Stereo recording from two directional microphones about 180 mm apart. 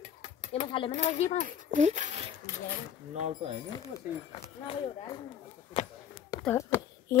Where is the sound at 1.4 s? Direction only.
45° right (ahead or behind).